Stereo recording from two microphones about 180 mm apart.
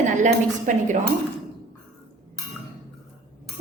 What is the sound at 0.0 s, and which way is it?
Speech, 40° right (ahead or behind).